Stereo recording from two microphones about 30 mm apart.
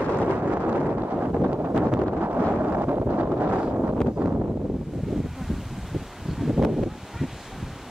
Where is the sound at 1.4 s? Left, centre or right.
Right.